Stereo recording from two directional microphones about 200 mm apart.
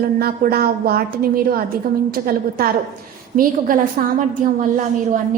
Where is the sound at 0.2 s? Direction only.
50° right (ahead or behind).